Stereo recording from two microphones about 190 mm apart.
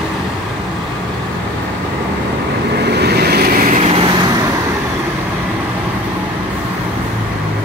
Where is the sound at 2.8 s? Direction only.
60° right (ahead or behind).